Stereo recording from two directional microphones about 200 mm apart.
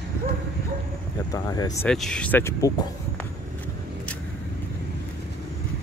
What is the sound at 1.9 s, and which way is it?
Speech, 5° left (ahead or behind).